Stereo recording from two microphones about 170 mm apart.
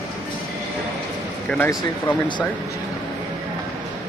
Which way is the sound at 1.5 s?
10° left (ahead or behind).